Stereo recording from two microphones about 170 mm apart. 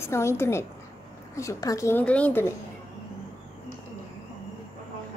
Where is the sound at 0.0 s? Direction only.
15° left (ahead or behind).